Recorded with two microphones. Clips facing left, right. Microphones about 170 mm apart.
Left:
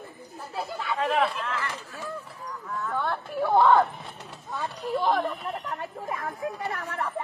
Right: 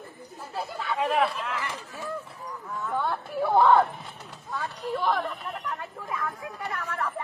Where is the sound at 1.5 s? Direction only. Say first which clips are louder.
Even; 20° right (ahead or behind).